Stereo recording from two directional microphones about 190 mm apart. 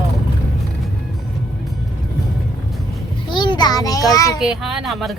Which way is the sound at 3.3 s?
25° left (ahead or behind).